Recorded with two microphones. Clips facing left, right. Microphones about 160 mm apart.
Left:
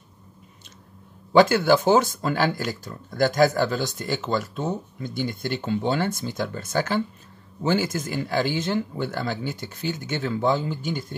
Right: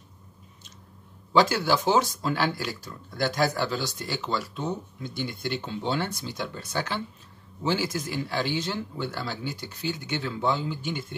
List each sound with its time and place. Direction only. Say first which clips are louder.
1.3 s speech: left 5 dB; 55° left (ahead or behind)